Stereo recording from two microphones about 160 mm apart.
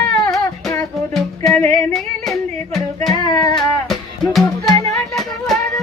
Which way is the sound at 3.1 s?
30° left (ahead or behind).